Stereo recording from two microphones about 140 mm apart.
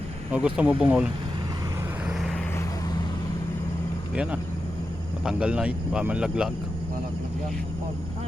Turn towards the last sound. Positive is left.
turn(degrees=-5)  # may be behind; listen again after turning